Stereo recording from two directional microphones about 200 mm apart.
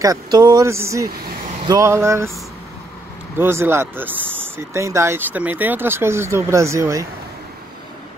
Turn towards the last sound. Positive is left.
turn(degrees=-15)  # may be behind; listen again after turning